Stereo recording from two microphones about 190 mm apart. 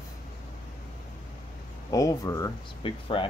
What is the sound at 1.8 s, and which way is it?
Speech, 20° left (ahead or behind).